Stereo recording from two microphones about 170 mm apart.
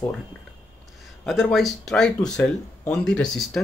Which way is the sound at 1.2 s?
Centre (ahead or behind).